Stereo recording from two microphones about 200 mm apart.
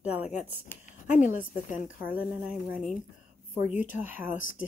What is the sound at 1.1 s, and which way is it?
Speech, 40° left (ahead or behind).